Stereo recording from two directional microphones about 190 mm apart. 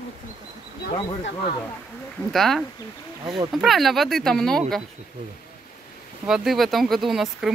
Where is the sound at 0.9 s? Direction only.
30° left (ahead or behind).